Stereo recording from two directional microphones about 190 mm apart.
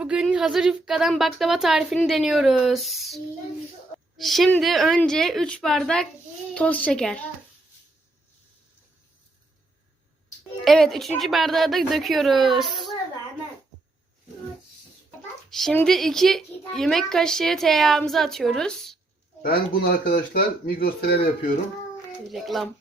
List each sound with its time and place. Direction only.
0.0 s a woman's voice: 5° right (ahead or behind)
4.2 s a woman's voice: centre (ahead or behind)
10.6 s a woman's voice: centre (ahead or behind)
15.4 s a woman's voice: centre (ahead or behind)
19.4 s speech: 50° left (ahead or behind)
22.3 s a woman's voice: centre (ahead or behind)